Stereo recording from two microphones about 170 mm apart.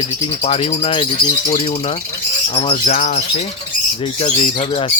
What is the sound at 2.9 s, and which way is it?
Speech, 45° left (ahead or behind).